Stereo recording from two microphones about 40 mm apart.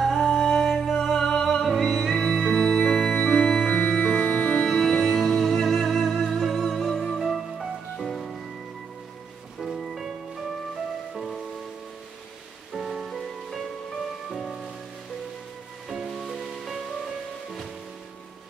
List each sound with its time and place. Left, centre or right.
0.0 s music: centre
3.6 s organ: centre
4.6 s music: centre
9.6 s music: centre
12.7 s music: centre
16.1 s music: centre